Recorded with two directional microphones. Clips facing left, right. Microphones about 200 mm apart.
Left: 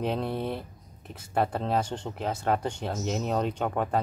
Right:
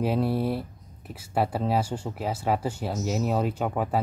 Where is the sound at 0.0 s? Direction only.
5° right (ahead or behind).